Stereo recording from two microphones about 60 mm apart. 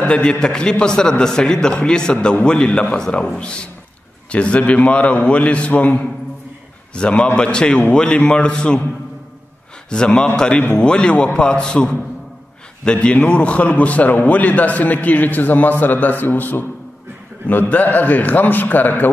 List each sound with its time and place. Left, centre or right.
0.0 s a man's voice: centre
9.8 s a man's voice: centre; by 19.0 s left